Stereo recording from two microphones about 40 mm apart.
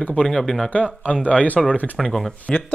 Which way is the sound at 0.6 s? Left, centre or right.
Left.